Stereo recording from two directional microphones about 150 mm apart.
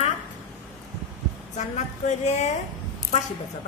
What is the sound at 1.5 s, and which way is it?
Speech, 50° left (ahead or behind).